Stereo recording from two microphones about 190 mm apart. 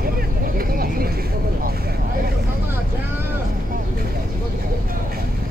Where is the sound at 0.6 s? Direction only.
50° right (ahead or behind).